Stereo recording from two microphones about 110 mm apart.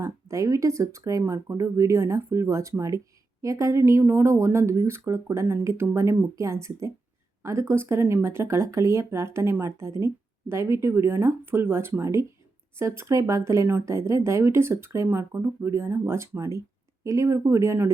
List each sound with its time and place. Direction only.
0.0 s speech: 25° right (ahead or behind)